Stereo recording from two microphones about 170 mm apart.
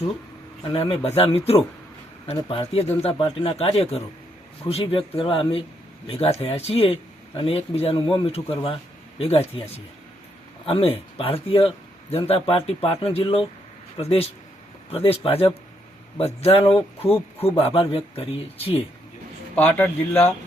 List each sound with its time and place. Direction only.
0.7 s speech: 35° left (ahead or behind)
19.5 s speech: 10° left (ahead or behind)